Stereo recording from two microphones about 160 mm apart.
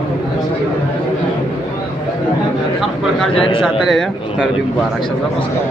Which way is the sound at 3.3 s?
35° left (ahead or behind).